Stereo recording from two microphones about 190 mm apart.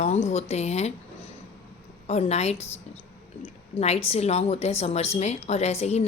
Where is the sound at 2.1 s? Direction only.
35° left (ahead or behind).